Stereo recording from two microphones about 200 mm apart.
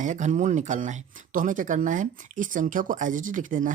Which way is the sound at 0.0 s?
35° right (ahead or behind).